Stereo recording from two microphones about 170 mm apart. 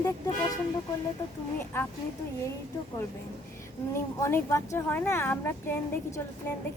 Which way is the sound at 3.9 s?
15° left (ahead or behind).